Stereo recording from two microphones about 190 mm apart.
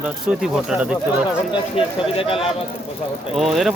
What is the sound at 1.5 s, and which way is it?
Speech, 30° left (ahead or behind).